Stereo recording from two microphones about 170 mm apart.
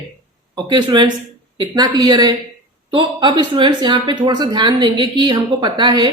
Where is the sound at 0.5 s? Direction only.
25° right (ahead or behind).